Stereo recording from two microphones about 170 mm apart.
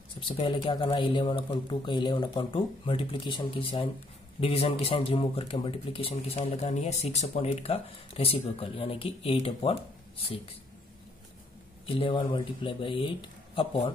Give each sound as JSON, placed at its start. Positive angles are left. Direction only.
{"t": 0.2, "sound": "speech", "side_deg": 30}
{"t": 11.8, "sound": "speech", "side_deg": 30}